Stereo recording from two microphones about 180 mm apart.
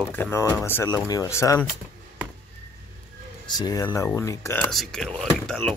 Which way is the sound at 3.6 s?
20° left (ahead or behind).